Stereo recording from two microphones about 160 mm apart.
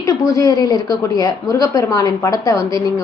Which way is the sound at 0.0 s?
20° left (ahead or behind).